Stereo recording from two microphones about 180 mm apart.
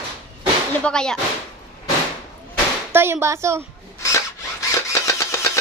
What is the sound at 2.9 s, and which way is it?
Speech, 15° right (ahead or behind).